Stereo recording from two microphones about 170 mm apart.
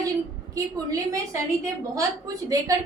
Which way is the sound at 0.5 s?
20° right (ahead or behind).